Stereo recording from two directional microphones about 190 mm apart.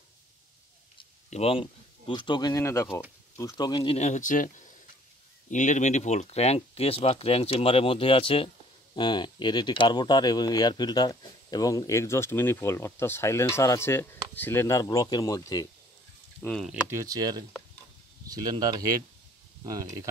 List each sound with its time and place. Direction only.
0.9 s speech: 30° left (ahead or behind)
16.4 s speech: 5° left (ahead or behind)
16.9 s speech: 20° right (ahead or behind)